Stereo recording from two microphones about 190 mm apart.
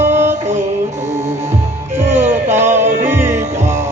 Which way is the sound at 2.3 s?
10° right (ahead or behind).